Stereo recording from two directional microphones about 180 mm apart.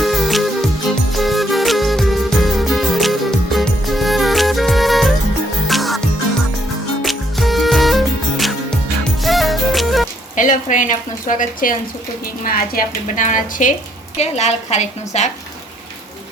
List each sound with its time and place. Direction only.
0.0 s music: centre (ahead or behind)
7.0 s music: centre (ahead or behind)
10.3 s a woman's voice: 45° left (ahead or behind)